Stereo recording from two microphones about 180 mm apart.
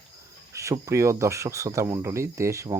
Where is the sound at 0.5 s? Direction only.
15° right (ahead or behind).